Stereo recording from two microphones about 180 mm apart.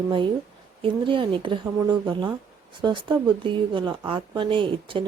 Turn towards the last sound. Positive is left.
turn(degrees=-30)  # may be behind; listen again after turning